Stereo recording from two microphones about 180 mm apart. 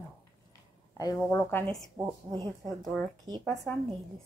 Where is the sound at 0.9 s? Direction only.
20° left (ahead or behind).